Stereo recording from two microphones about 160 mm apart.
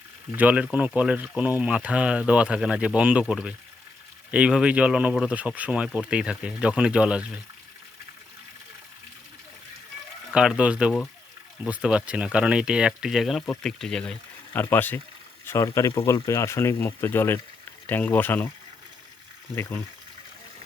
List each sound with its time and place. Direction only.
0.3 s speech: 10° right (ahead or behind)
10.3 s speech: 5° right (ahead or behind); by 18.5 s 10° left (ahead or behind)